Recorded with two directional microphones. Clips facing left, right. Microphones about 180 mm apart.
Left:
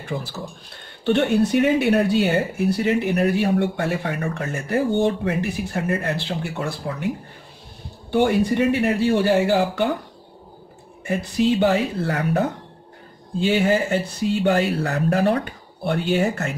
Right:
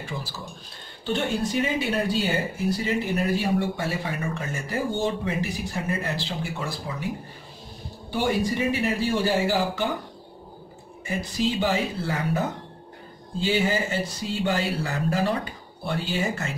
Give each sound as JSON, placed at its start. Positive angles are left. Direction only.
{"t": 0.0, "sound": "speech", "side_deg": 60}
{"t": 8.1, "sound": "speech", "side_deg": 60}
{"t": 11.1, "sound": "speech", "side_deg": 60}